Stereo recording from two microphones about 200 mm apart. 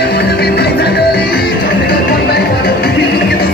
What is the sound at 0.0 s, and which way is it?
Music, 55° left (ahead or behind).